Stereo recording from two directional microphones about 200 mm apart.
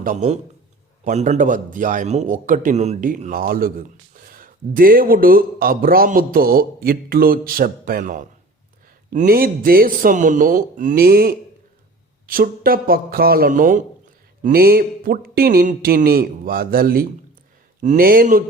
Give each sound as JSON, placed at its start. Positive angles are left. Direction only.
{"t": 0.0, "sound": "a man's voice", "side_deg": -40}